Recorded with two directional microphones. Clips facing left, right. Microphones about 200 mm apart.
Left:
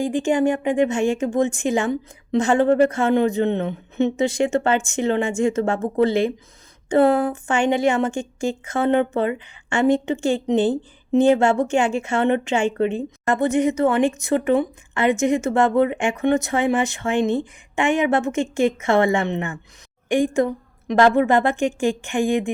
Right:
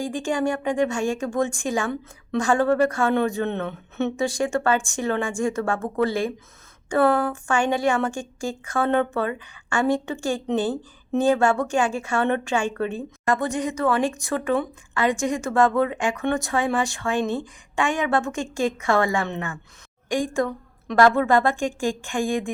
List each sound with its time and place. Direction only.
0.0 s a woman's voice: 20° left (ahead or behind)